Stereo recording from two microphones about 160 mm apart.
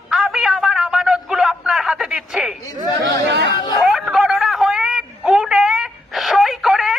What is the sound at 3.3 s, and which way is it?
Speech, 90° right.